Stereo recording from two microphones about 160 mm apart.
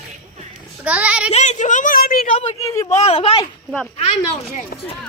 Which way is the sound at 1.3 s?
45° left (ahead or behind).